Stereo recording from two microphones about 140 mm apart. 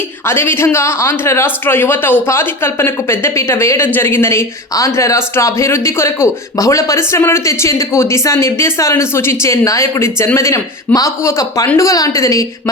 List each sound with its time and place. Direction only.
0.3 s a man's voice: 15° left (ahead or behind)